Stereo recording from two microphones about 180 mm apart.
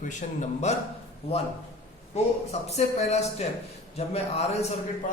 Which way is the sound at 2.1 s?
35° left (ahead or behind).